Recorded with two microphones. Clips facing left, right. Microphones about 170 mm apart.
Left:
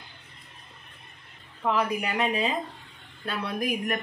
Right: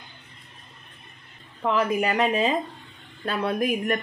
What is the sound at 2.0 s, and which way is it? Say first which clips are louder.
Speech: right 5 dB; 40° right (ahead or behind).